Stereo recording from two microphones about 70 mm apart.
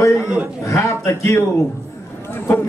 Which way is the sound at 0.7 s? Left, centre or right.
Left.